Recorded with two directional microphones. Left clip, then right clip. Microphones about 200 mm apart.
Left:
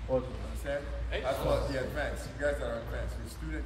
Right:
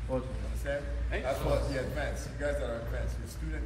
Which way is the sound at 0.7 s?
10° left (ahead or behind).